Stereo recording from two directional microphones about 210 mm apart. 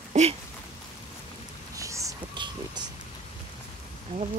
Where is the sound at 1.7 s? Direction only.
15° right (ahead or behind).